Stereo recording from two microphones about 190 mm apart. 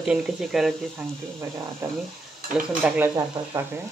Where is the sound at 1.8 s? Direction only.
15° right (ahead or behind).